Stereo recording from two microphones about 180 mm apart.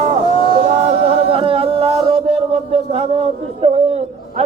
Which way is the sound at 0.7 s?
35° right (ahead or behind).